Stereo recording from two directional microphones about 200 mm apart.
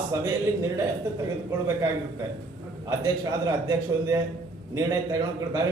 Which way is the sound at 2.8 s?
15° right (ahead or behind).